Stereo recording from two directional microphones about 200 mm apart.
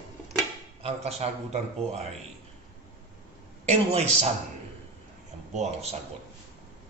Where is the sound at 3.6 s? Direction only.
30° right (ahead or behind).